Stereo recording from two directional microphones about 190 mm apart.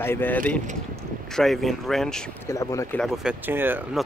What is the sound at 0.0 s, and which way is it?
Speech, 10° left (ahead or behind).